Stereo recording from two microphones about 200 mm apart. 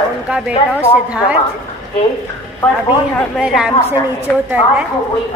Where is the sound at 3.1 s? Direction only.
Centre (ahead or behind).